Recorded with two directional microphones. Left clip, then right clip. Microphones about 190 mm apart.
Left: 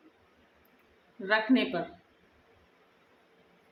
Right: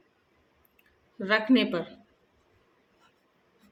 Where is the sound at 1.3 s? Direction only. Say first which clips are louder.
Right 2 dB; 45° right (ahead or behind).